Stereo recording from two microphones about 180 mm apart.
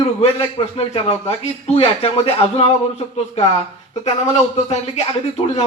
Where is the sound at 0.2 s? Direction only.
35° left (ahead or behind).